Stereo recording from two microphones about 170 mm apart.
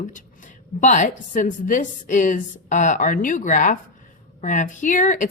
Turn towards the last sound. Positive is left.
turn(degrees=50)  # may be behind; listen again after turning